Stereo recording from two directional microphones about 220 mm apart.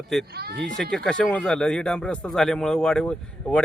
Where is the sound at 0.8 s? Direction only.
5° left (ahead or behind).